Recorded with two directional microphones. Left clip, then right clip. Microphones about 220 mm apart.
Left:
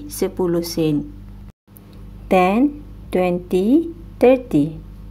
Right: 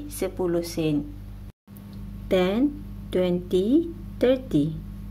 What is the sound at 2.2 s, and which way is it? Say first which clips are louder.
Speech: left 7 dB; 5° left (ahead or behind).